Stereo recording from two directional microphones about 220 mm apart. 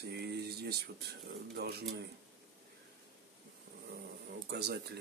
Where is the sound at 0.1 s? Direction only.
50° right (ahead or behind).